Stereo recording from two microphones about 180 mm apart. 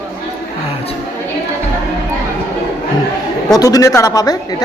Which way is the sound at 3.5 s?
20° left (ahead or behind).